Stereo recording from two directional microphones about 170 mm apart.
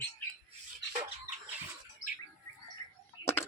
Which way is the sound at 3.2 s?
25° left (ahead or behind).